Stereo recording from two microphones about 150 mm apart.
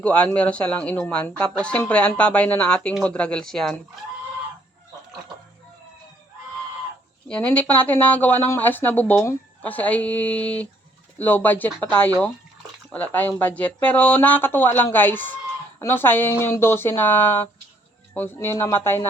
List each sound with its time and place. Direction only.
0.0 s speech: 10° left (ahead or behind)
7.3 s speech: 10° left (ahead or behind)